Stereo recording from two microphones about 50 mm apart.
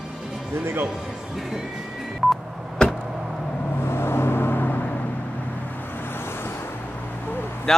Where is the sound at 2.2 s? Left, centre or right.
Centre.